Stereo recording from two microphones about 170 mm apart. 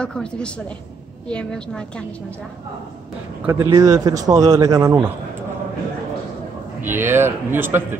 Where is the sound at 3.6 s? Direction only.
20° right (ahead or behind).